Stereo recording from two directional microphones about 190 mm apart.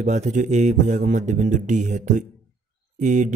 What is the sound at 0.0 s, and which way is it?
Speech, 40° right (ahead or behind).